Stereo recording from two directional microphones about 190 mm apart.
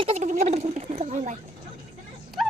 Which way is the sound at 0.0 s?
35° right (ahead or behind).